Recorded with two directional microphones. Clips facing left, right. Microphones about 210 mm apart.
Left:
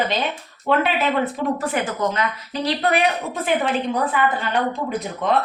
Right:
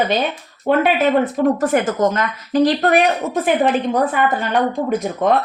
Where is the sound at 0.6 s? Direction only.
45° right (ahead or behind).